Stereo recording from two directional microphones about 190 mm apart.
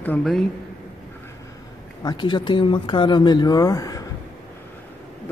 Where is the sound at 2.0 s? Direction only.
25° left (ahead or behind).